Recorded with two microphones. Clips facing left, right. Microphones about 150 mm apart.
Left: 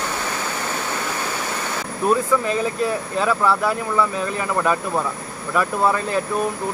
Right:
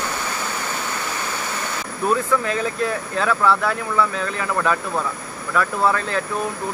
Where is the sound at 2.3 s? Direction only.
5° left (ahead or behind).